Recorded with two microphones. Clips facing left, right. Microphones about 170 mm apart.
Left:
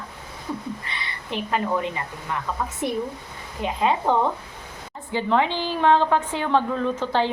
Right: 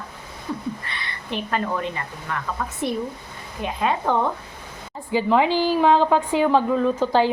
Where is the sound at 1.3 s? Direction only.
10° left (ahead or behind).